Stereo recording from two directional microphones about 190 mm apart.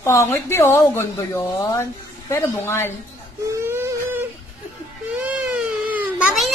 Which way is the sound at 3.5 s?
15° right (ahead or behind).